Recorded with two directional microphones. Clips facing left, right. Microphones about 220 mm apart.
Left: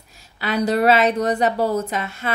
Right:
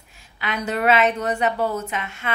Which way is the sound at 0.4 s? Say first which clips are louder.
Left 6 dB; 35° left (ahead or behind).